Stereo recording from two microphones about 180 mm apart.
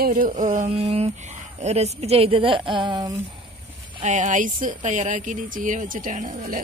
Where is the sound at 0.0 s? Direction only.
50° right (ahead or behind); by 3.2 s 20° right (ahead or behind).